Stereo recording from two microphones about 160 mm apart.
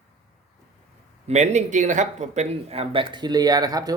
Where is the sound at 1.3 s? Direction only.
45° right (ahead or behind).